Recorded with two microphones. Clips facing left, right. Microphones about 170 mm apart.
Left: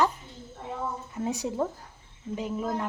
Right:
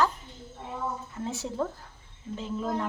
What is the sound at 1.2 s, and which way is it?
Speech, 15° left (ahead or behind).